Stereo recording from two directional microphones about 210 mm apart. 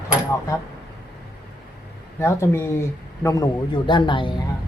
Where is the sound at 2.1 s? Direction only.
15° left (ahead or behind).